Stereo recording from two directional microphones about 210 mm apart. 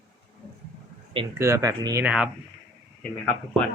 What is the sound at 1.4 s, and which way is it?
Speech, 15° right (ahead or behind).